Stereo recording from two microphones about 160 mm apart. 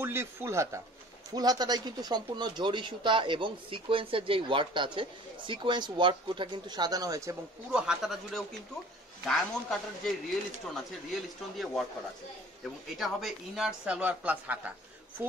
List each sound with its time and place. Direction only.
0.0 s a woman's voice: 15° right (ahead or behind)
7.7 s a man's voice: 5° right (ahead or behind)
11.5 s a man's voice: centre (ahead or behind)
13.0 s a woman's voice: 5° right (ahead or behind)